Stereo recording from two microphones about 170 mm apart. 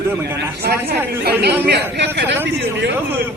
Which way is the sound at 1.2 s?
75° right (ahead or behind).